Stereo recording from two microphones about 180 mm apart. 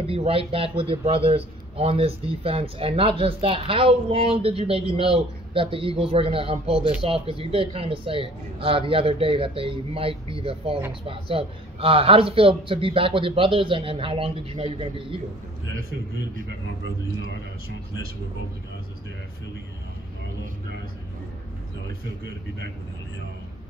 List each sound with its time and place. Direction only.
0.0 s a man's voice: 30° right (ahead or behind)
17.2 s a man's voice: 60° right (ahead or behind)